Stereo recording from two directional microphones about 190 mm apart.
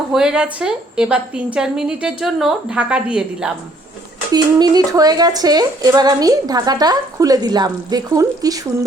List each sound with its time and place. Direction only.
0.1 s a woman's voice: 5° right (ahead or behind)
4.3 s speech: 20° right (ahead or behind)